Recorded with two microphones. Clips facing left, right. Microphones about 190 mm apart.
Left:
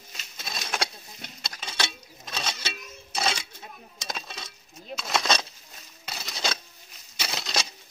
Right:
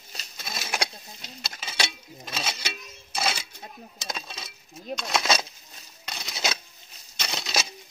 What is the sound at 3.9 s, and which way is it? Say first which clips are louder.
Coin: left 1 dB; centre (ahead or behind).